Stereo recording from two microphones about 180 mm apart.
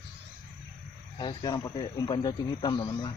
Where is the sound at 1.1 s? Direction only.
25° left (ahead or behind).